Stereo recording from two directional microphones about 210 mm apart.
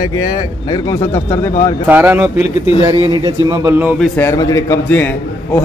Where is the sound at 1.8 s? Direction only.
10° right (ahead or behind).